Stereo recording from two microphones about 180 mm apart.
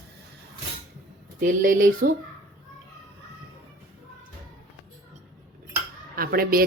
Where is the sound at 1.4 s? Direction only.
50° right (ahead or behind).